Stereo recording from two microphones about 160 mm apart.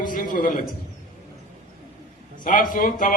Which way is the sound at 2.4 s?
55° left (ahead or behind).